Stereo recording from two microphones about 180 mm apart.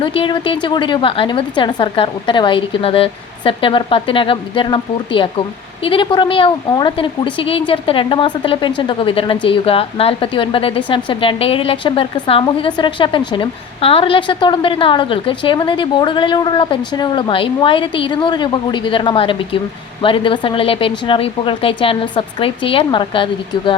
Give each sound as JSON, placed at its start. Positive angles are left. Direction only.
{"t": 0.0, "sound": "a woman's voice", "side_deg": 30}